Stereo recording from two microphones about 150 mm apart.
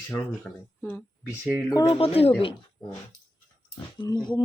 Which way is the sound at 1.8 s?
40° left (ahead or behind).